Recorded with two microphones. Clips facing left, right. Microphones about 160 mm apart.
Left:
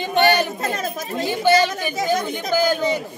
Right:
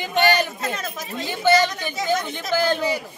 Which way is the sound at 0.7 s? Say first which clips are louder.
Left 4 dB; 45° left (ahead or behind).